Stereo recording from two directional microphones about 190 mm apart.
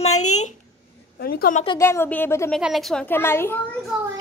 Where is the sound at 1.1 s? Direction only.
50° left (ahead or behind).